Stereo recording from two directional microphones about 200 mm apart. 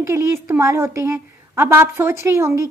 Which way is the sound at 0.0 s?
15° right (ahead or behind).